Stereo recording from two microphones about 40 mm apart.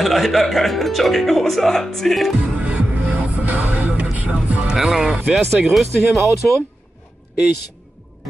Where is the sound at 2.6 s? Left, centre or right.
Right.